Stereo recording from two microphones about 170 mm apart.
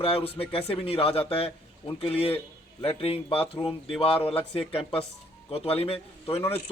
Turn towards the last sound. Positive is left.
turn(degrees=35)  # may be behind; listen again after turning